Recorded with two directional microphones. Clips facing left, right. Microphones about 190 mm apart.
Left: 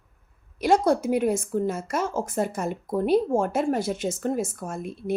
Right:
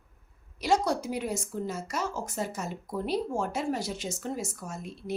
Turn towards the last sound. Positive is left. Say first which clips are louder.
# left 7 dB
turn(degrees=55)  # may be behind; listen again after turning